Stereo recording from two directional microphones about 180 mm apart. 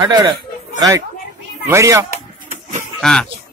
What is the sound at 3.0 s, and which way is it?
Speech, 5° left (ahead or behind).